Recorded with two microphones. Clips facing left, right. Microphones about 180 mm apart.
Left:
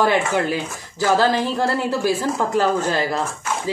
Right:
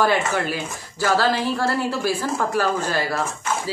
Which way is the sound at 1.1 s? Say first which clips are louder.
Left 2 dB; 15° left (ahead or behind).